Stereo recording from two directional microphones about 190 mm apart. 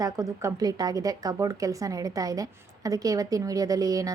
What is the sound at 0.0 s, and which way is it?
A woman's voice, 20° right (ahead or behind).